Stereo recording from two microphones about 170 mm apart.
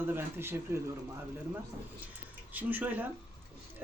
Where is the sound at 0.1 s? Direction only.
15° right (ahead or behind).